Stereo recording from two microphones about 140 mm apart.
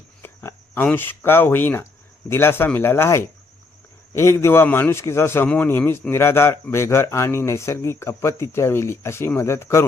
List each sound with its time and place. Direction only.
0.2 s a man's voice: 15° left (ahead or behind)